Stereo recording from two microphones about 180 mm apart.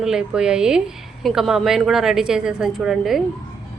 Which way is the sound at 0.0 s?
5° right (ahead or behind).